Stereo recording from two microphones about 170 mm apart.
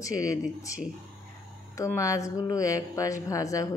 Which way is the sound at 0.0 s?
20° left (ahead or behind).